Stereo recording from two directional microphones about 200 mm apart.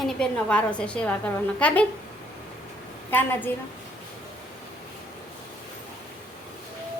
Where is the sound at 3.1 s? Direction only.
10° left (ahead or behind).